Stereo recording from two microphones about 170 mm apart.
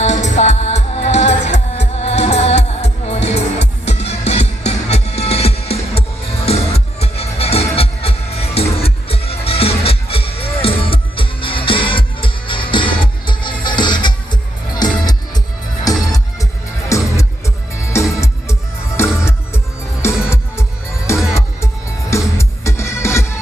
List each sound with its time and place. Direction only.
0.0 s music: 45° left (ahead or behind); by 14.3 s 25° left (ahead or behind)
15.9 s music: 20° left (ahead or behind)